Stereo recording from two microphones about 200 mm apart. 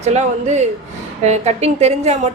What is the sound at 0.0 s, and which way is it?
A woman's voice, 35° right (ahead or behind).